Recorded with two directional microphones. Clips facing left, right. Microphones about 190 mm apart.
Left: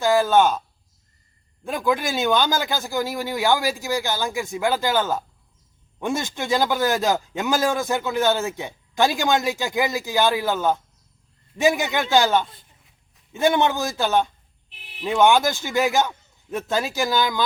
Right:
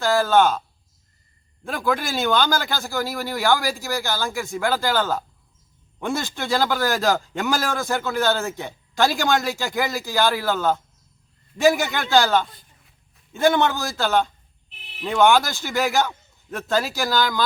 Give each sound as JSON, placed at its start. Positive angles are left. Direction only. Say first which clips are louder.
{"t": 0.0, "sound": "speech", "louder": "left 1 dB", "side_deg": 15}
{"t": 1.6, "sound": "speech", "louder": "left 1 dB", "side_deg": 15}